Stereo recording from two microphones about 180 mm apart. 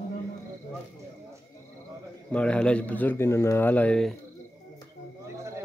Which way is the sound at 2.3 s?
5° left (ahead or behind).